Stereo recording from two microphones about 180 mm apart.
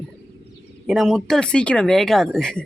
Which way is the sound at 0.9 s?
Centre (ahead or behind).